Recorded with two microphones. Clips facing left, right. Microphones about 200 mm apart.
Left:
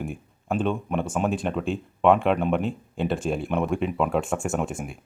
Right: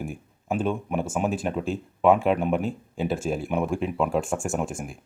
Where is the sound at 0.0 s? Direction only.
5° right (ahead or behind).